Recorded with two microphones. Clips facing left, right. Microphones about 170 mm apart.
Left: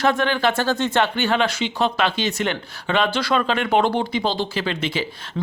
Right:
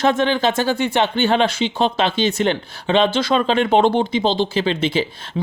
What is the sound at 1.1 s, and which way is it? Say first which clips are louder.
Speech: right 4 dB; 25° right (ahead or behind).